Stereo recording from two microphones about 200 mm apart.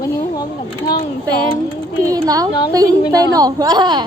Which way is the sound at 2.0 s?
15° right (ahead or behind).